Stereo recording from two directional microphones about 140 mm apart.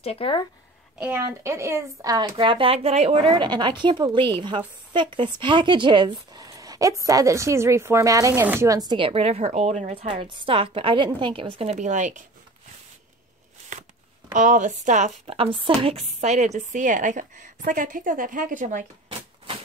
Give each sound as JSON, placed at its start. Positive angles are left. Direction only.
{"t": 0.0, "sound": "speech", "side_deg": 45}
{"t": 0.9, "sound": "speech", "side_deg": -10}
{"t": 10.2, "sound": "speech", "side_deg": -35}
{"t": 11.7, "sound": "a woman's voice", "side_deg": -60}
{"t": 14.3, "sound": "a woman's voice", "side_deg": -65}
{"t": 15.2, "sound": "speech", "side_deg": -40}
{"t": 16.0, "sound": "a woman's voice", "side_deg": -55}